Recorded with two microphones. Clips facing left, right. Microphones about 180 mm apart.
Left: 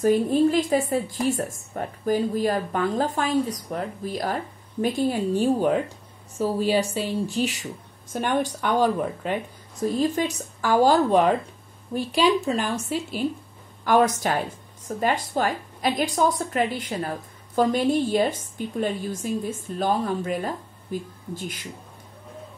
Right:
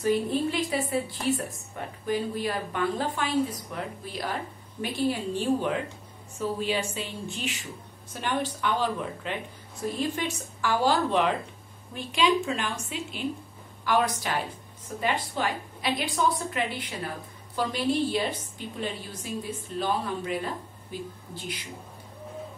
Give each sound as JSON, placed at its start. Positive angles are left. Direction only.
{"t": 0.0, "sound": "a woman's voice", "side_deg": 45}
{"t": 8.1, "sound": "a woman's voice", "side_deg": 50}